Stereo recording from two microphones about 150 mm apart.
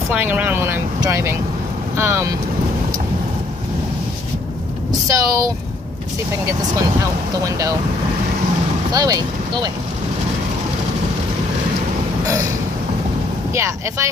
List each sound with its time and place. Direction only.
0.1 s speech: 10° right (ahead or behind)
5.0 s speech: 20° right (ahead or behind)
7.4 s speech: 20° right (ahead or behind)
8.9 s speech: 25° right (ahead or behind)
13.6 s speech: 20° right (ahead or behind)